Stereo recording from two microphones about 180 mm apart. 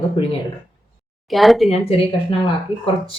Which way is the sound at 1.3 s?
Centre (ahead or behind).